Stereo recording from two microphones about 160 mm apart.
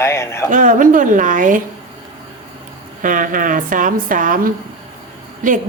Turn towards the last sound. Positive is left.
turn(degrees=-55)  # may be behind; listen again after turning